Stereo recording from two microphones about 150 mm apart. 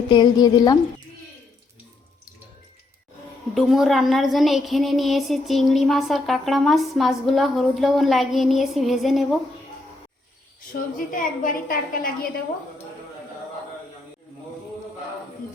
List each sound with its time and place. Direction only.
0.1 s a woman's voice: 30° left (ahead or behind)
3.5 s a woman's voice: centre (ahead or behind)
10.9 s a woman's voice: 65° left (ahead or behind)